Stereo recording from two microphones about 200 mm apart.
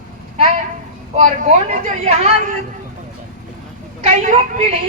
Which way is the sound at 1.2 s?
35° right (ahead or behind).